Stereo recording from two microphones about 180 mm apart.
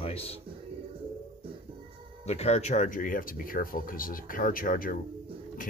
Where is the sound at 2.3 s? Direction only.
35° left (ahead or behind).